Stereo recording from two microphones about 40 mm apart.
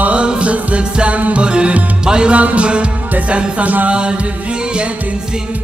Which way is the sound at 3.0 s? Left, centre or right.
Right.